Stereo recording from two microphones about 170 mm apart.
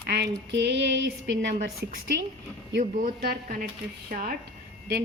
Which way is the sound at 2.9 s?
60° right (ahead or behind).